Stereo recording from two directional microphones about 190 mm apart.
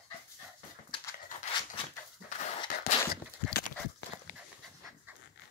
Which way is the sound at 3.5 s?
55° left (ahead or behind).